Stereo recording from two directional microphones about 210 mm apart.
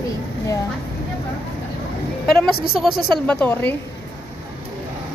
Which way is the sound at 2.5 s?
45° left (ahead or behind).